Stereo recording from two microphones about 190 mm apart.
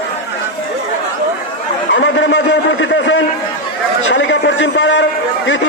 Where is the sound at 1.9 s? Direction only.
70° left (ahead or behind).